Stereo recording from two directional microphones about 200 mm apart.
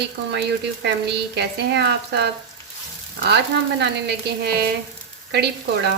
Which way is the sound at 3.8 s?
55° right (ahead or behind).